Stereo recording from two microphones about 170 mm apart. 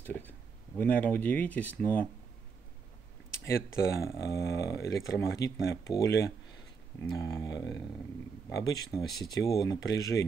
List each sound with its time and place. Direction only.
0.0 s speech: 10° left (ahead or behind)
4.0 s speech: 15° left (ahead or behind)